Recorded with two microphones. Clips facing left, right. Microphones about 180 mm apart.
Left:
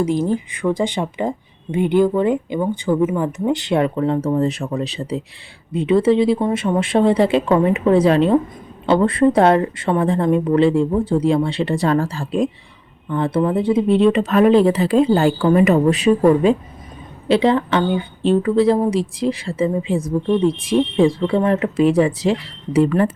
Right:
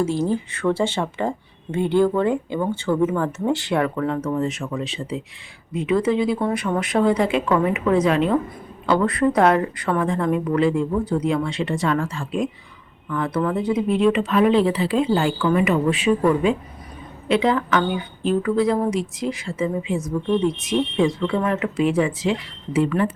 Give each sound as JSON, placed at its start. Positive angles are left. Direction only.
{"t": 0.0, "sound": "a woman's voice", "side_deg": 15}